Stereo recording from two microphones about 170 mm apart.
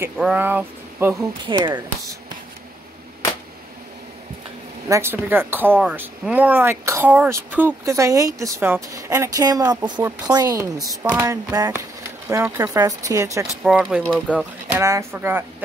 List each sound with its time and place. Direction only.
0.2 s speech: 10° right (ahead or behind)
1.4 s speech: 30° right (ahead or behind)
4.8 s speech: 15° right (ahead or behind)
11.0 s speech: 10° right (ahead or behind)
11.2 s speech: 20° right (ahead or behind)
13.7 s speech: 5° right (ahead or behind)